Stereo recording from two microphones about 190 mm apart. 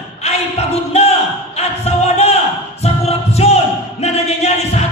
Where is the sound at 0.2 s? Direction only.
35° left (ahead or behind).